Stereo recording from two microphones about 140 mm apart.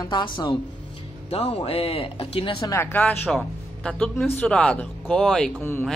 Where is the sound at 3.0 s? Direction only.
Centre (ahead or behind).